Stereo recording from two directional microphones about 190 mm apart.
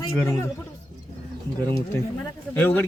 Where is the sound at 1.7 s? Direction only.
15° left (ahead or behind).